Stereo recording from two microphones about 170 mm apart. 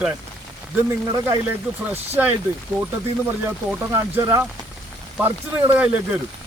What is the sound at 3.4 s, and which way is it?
Speech, 15° right (ahead or behind).